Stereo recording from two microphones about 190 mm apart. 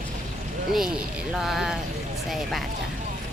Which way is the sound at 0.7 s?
5° right (ahead or behind).